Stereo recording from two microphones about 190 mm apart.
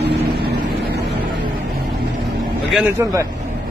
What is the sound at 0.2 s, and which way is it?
Vehicle, 55° right (ahead or behind).